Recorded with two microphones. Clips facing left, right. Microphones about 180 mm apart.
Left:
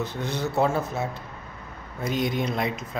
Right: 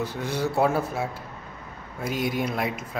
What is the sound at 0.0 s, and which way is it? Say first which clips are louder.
Speech: right 1 dB; 10° right (ahead or behind).